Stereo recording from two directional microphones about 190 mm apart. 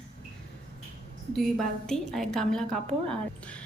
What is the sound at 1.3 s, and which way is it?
A woman's voice, centre (ahead or behind).